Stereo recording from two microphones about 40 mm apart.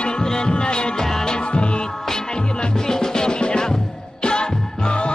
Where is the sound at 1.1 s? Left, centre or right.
Centre.